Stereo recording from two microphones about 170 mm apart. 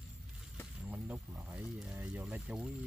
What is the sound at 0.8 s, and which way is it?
Speech, 10° right (ahead or behind).